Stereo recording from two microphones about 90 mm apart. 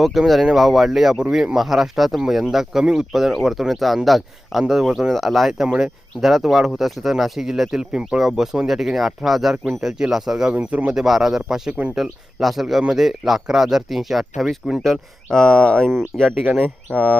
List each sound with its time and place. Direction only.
0.0 s speech: centre (ahead or behind)
16.5 s speech: 20° right (ahead or behind)